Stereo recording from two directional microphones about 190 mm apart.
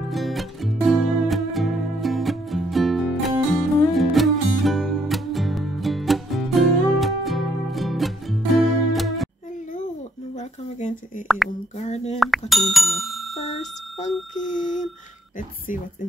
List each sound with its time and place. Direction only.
0.1 s music: centre (ahead or behind)
11.2 s a sound: centre (ahead or behind)
11.8 s speech: 35° left (ahead or behind)
12.2 s speech: centre (ahead or behind)
13.6 s bicycle bell: 35° left (ahead or behind)
14.5 s speech: 40° left (ahead or behind)